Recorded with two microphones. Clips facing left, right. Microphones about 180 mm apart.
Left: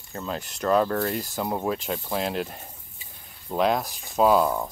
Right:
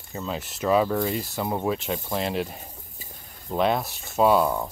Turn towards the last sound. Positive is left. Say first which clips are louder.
# even
turn(degrees=0)  # may be behind; listen again after turning